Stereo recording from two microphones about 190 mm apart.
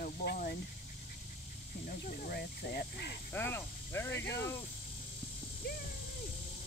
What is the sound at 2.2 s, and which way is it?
Speech, 55° left (ahead or behind).